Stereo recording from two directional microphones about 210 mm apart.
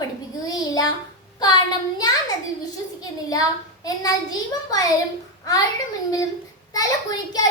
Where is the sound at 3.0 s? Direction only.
15° left (ahead or behind).